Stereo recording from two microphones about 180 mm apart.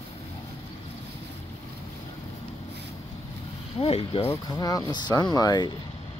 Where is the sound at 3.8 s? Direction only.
35° left (ahead or behind).